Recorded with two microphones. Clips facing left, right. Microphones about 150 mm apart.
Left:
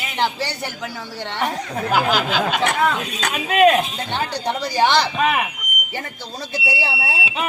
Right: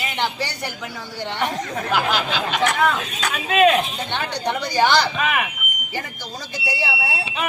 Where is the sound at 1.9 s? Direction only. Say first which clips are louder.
Left 3 dB; 40° left (ahead or behind).